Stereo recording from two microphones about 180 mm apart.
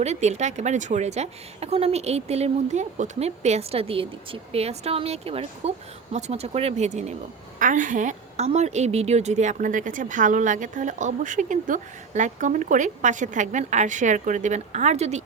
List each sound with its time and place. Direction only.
0.0 s a woman's voice: 40° right (ahead or behind)